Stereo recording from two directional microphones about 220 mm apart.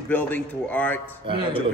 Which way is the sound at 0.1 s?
10° left (ahead or behind).